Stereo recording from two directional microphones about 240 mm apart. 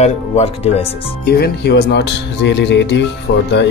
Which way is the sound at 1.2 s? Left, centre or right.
Left.